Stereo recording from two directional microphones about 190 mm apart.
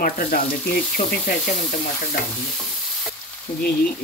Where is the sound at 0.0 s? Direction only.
50° left (ahead or behind).